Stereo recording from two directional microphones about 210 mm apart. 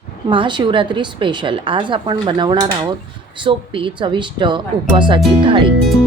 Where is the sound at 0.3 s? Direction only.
25° right (ahead or behind).